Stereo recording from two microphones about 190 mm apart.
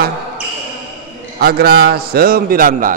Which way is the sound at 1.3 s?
55° right (ahead or behind).